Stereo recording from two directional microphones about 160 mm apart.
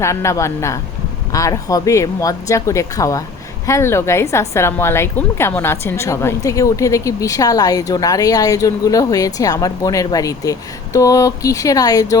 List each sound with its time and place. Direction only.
0.0 s a man's voice: 20° left (ahead or behind)